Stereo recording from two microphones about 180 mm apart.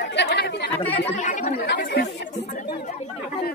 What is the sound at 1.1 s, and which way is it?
Chatter, 45° left (ahead or behind).